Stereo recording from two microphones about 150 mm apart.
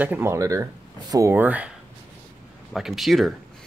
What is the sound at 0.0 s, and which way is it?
Speech, 15° right (ahead or behind).